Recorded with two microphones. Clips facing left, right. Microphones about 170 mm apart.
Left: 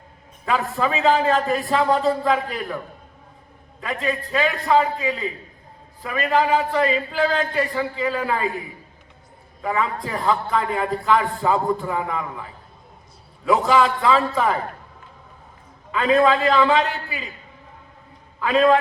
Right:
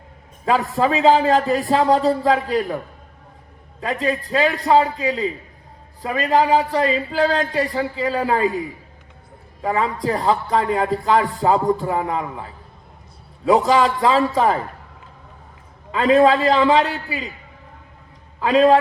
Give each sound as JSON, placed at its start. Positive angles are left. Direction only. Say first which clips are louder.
{"t": 0.4, "sound": "a man's voice", "louder": "right 4 dB", "side_deg": -35}
{"t": 3.8, "sound": "a man's voice", "louder": "right 3 dB", "side_deg": -35}
{"t": 9.6, "sound": "a man's voice", "louder": "right 4 dB", "side_deg": -35}
{"t": 15.9, "sound": "a man's voice", "louder": "right 3 dB", "side_deg": -35}
{"t": 18.3, "sound": "a man's voice", "louder": "right 3 dB", "side_deg": -35}